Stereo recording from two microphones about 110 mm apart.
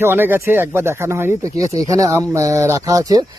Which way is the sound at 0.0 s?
20° right (ahead or behind).